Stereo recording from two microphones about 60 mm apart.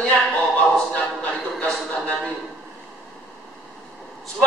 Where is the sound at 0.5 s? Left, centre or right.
Left.